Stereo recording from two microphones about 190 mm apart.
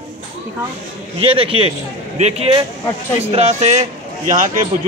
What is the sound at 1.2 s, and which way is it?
A man's voice, 30° right (ahead or behind).